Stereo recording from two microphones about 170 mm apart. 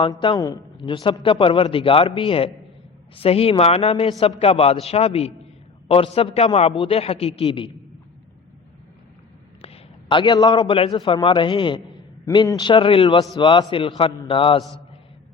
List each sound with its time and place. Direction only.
0.1 s a man's voice: 20° left (ahead or behind)
9.6 s a sound: 30° left (ahead or behind)
10.9 s a man's voice: 30° left (ahead or behind)